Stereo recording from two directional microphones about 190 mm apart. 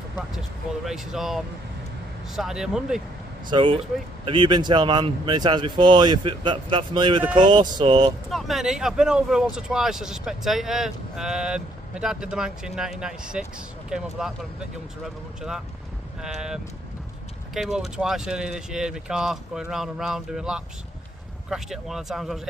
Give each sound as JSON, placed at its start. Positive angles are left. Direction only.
{"t": 0.8, "sound": "speech", "side_deg": 0}
{"t": 3.4, "sound": "speech", "side_deg": -25}
{"t": 8.3, "sound": "speech", "side_deg": 0}
{"t": 16.2, "sound": "speech", "side_deg": -5}